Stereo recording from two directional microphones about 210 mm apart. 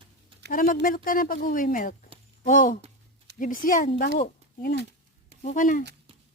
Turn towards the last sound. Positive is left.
turn(degrees=40)  # may be behind; listen again after turning